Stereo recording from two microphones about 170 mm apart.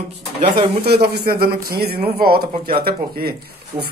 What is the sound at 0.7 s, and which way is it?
Speech, 70° right (ahead or behind).